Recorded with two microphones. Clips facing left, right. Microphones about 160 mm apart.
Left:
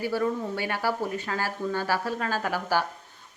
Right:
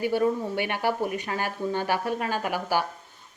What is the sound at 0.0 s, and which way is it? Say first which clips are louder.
A woman's voice: right 3 dB; 20° right (ahead or behind).